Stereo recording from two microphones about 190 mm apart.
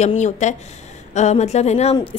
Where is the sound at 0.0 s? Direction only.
40° left (ahead or behind).